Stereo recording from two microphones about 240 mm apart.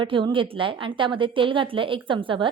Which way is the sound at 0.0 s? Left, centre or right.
Centre.